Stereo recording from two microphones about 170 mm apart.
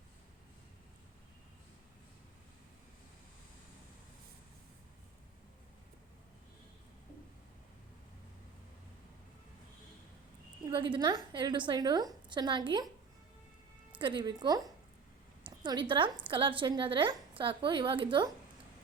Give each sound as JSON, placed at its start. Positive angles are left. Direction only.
{"t": 10.7, "sound": "a woman's voice", "side_deg": -30}
{"t": 14.0, "sound": "a woman's voice", "side_deg": -30}